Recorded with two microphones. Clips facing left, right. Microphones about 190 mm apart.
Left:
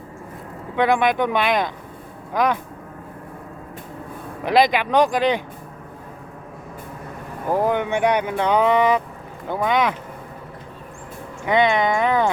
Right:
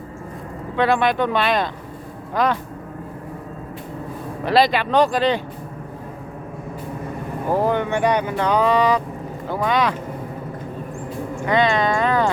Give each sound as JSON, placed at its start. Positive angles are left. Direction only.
{"t": 0.8, "sound": "speech", "side_deg": 15}
{"t": 4.4, "sound": "speech", "side_deg": 15}
{"t": 7.5, "sound": "speech", "side_deg": 15}
{"t": 11.4, "sound": "speech", "side_deg": 20}